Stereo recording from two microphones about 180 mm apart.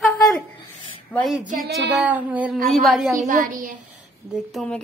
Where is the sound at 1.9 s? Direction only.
5° right (ahead or behind).